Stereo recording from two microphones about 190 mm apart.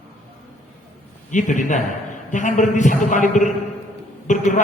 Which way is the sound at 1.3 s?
40° left (ahead or behind).